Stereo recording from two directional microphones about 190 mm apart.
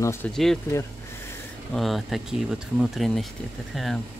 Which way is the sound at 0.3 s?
Centre (ahead or behind).